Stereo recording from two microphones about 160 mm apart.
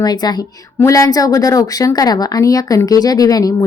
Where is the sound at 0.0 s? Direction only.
25° left (ahead or behind).